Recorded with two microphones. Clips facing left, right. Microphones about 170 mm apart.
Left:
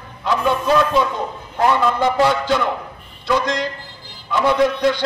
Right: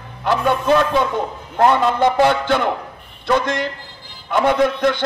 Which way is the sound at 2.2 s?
55° right (ahead or behind).